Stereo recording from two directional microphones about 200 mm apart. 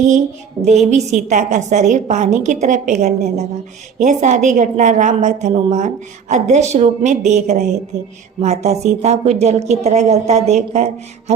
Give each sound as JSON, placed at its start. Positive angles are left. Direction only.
{"t": 0.6, "sound": "a woman's voice", "side_deg": -35}